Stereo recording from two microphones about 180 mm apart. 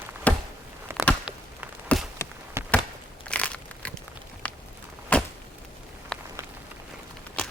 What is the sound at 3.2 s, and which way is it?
Crunch, 5° left (ahead or behind).